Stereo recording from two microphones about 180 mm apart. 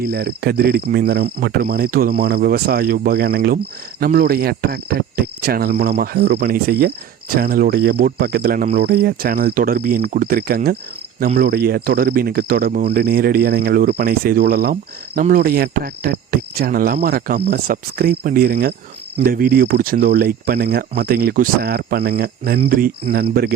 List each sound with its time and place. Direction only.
0.0 s speech: 60° right (ahead or behind)